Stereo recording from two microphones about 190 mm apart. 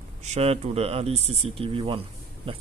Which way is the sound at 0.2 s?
35° right (ahead or behind).